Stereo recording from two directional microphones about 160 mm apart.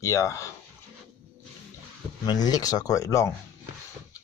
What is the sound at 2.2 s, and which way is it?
Speech, 25° left (ahead or behind).